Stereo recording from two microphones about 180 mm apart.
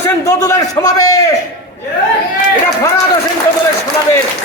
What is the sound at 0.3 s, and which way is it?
A man's voice, 15° left (ahead or behind).